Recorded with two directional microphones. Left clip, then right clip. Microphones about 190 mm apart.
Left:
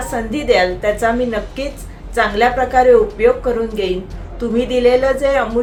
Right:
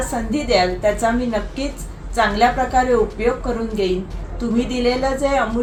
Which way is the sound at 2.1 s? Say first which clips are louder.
Left 2 dB; 20° left (ahead or behind).